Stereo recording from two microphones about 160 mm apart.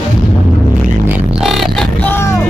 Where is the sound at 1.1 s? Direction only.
Centre (ahead or behind).